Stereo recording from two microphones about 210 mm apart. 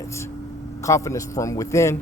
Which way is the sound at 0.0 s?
15° left (ahead or behind).